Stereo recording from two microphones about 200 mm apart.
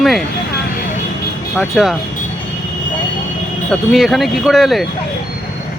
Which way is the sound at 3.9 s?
Centre (ahead or behind).